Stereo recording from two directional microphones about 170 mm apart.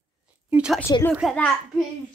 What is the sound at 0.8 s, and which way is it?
Speech, 15° left (ahead or behind).